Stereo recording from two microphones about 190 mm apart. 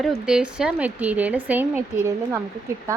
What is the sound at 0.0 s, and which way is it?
A woman's voice, 5° right (ahead or behind).